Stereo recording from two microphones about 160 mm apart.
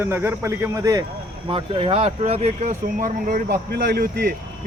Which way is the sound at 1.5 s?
35° right (ahead or behind).